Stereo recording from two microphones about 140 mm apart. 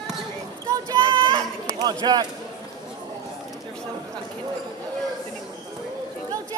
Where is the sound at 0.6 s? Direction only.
25° right (ahead or behind).